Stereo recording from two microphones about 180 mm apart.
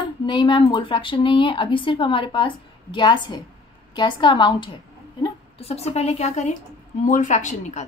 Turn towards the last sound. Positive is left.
turn(degrees=40)  # may be behind; listen again after turning